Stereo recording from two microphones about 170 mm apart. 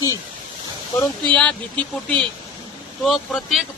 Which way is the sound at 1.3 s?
5° left (ahead or behind).